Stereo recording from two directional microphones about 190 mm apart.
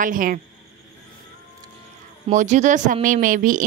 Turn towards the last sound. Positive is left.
turn(degrees=-45)  # may be behind; listen again after turning